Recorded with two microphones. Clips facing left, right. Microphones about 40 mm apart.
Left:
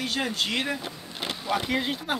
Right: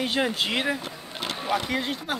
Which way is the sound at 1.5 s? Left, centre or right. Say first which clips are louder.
Even; centre.